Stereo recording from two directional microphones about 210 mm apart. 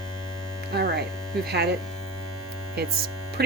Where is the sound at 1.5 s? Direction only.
50° right (ahead or behind).